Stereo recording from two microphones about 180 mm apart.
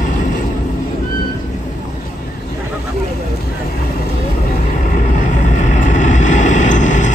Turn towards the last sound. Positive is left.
turn(degrees=45)  # may be behind; listen again after turning